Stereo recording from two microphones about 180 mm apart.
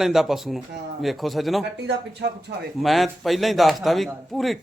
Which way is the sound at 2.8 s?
Centre (ahead or behind).